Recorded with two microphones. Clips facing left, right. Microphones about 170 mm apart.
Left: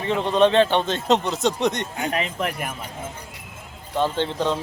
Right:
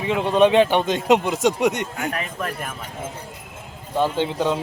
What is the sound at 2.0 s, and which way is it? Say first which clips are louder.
Speech: left 2 dB; 20° left (ahead or behind).